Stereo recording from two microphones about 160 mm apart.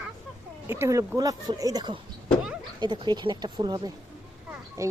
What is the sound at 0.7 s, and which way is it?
Speech, 15° right (ahead or behind).